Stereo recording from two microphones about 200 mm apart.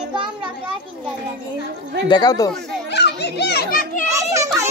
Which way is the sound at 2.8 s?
55° left (ahead or behind).